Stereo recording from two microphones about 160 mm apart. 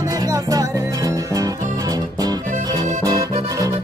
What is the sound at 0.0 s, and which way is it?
Music, 20° right (ahead or behind).